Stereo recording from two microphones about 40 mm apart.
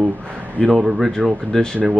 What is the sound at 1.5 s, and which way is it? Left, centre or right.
Speech, centre.